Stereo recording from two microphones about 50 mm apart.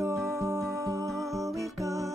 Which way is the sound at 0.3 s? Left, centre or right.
Right.